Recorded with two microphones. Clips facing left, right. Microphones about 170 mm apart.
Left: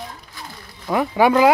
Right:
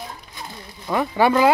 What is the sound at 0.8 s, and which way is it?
Speech, 10° left (ahead or behind).